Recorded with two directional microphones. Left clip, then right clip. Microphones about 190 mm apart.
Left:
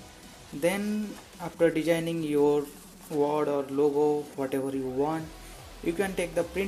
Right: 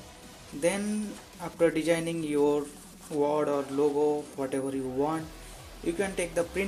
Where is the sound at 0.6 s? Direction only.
10° left (ahead or behind).